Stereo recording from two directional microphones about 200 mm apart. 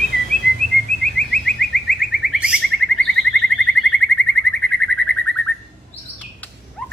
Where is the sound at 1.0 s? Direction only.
Centre (ahead or behind).